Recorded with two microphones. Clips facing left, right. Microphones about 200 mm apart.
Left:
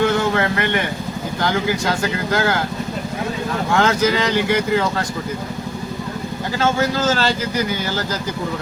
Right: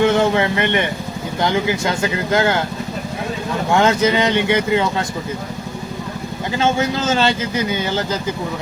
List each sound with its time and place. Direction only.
0.0 s vehicle: 20° right (ahead or behind)
2.3 s speech: 20° right (ahead or behind)
3.7 s speech: 20° right (ahead or behind)
6.6 s speech: 20° right (ahead or behind)